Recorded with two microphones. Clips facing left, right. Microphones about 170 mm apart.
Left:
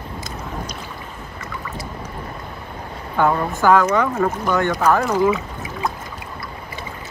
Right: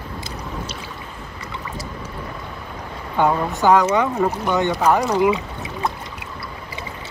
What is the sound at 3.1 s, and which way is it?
Speech, 20° right (ahead or behind).